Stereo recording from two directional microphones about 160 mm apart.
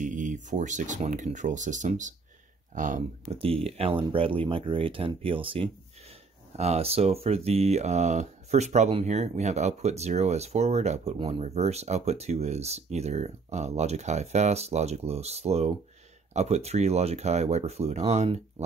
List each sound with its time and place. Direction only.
0.0 s speech: 55° right (ahead or behind)
3.3 s speech: 35° right (ahead or behind)
11.1 s speech: 35° right (ahead or behind)